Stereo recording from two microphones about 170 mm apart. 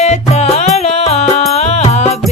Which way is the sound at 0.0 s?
40° left (ahead or behind).